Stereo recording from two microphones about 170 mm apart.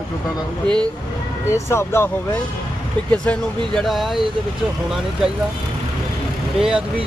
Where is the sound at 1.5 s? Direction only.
15° left (ahead or behind); by 4.2 s centre (ahead or behind).